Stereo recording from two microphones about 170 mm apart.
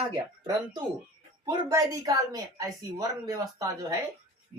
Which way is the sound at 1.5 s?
20° right (ahead or behind).